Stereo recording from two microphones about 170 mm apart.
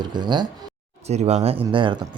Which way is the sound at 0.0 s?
25° right (ahead or behind).